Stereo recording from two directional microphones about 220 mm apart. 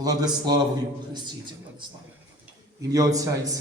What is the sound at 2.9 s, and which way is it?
Speech, 15° right (ahead or behind).